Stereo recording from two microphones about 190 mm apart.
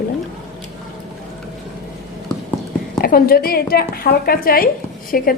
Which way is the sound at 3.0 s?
50° left (ahead or behind).